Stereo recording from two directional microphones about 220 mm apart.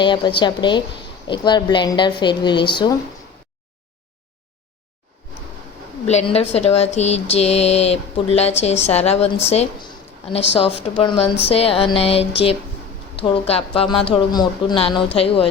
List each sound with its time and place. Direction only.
0.0 s speech: 20° left (ahead or behind)
6.1 s speech: 30° left (ahead or behind)